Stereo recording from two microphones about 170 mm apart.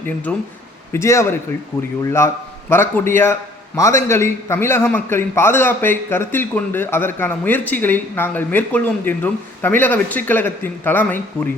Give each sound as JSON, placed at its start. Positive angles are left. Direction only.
{"t": 0.3, "sound": "a man's voice", "side_deg": 10}